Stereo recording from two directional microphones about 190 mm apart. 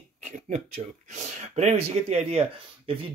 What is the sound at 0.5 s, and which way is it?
Speech, 35° right (ahead or behind).